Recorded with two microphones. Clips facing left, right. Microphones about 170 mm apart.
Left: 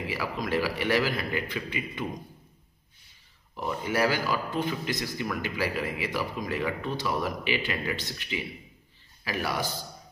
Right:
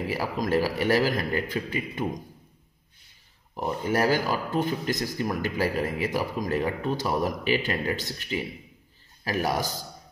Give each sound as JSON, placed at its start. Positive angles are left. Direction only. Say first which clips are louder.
{"t": 0.0, "sound": "a man's voice", "louder": "right 4 dB", "side_deg": -40}
{"t": 3.5, "sound": "speech", "louder": "right 3 dB", "side_deg": -45}